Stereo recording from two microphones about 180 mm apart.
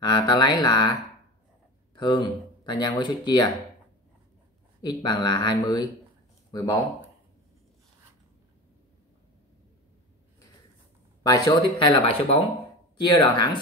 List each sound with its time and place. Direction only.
0.0 s speech: 25° left (ahead or behind)
2.0 s speech: 25° left (ahead or behind)
4.8 s speech: 25° left (ahead or behind)
11.2 s speech: 20° left (ahead or behind)